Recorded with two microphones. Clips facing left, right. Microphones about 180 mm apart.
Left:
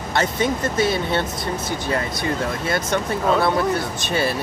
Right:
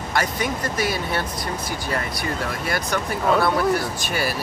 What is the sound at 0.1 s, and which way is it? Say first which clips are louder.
Speech: left 4 dB; 25° left (ahead or behind).